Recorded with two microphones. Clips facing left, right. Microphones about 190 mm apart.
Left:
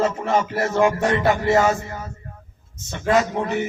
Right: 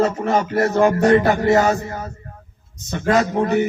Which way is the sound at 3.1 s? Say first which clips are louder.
Right 3 dB; 40° right (ahead or behind).